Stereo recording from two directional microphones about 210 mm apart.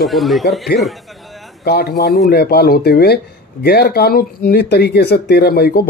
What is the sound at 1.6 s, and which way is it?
Speech, 50° left (ahead or behind).